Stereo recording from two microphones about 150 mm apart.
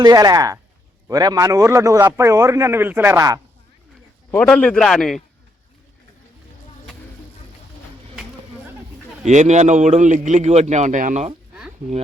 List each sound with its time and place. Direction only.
0.0 s a man's voice: 25° right (ahead or behind)
4.3 s a man's voice: 10° left (ahead or behind)
9.2 s a man's voice: 50° right (ahead or behind)